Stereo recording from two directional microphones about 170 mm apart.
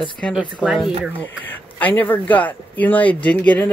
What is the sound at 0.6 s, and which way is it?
Speech, centre (ahead or behind).